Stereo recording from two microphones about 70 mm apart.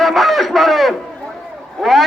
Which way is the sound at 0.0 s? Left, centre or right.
Centre.